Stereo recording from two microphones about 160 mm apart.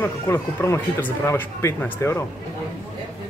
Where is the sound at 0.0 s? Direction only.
15° left (ahead or behind).